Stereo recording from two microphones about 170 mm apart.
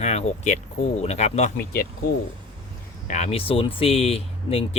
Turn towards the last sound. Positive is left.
turn(degrees=35)  # may be behind; listen again after turning